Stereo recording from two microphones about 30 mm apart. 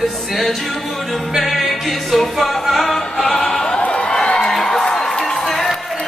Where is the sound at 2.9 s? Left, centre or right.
Centre.